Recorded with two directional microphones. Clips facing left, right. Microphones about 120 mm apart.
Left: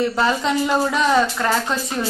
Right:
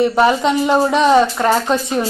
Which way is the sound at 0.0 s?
20° right (ahead or behind).